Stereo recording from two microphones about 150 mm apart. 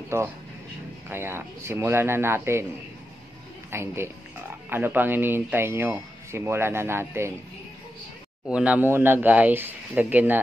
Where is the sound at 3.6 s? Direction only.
15° right (ahead or behind).